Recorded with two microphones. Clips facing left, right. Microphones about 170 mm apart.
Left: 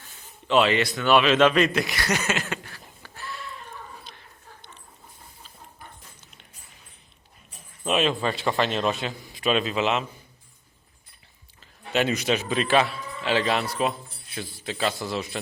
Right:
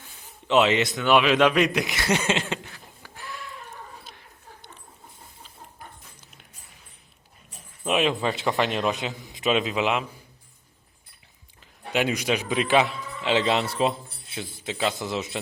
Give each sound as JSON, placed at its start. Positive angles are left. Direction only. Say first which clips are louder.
{"t": 0.4, "sound": "speech", "louder": "right 1 dB", "side_deg": -20}
{"t": 7.9, "sound": "a man's voice", "louder": "even", "side_deg": -15}
{"t": 11.6, "sound": "a man's voice", "louder": "left 1 dB", "side_deg": -15}